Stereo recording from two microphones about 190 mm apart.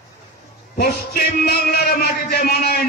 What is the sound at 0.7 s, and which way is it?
A man's voice, 50° left (ahead or behind).